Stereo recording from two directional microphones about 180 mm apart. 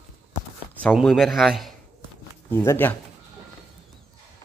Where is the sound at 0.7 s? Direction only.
5° left (ahead or behind).